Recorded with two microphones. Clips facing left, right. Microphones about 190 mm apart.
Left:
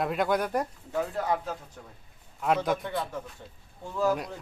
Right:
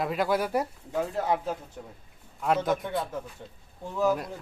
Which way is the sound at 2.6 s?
Centre (ahead or behind).